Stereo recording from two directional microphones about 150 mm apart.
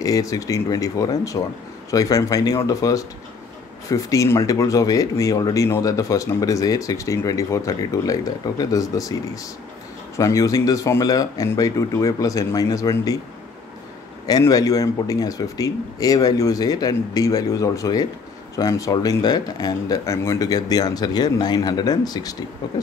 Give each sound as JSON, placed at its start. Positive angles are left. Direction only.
{"t": 0.0, "sound": "speech", "side_deg": 25}
{"t": 14.2, "sound": "speech", "side_deg": 25}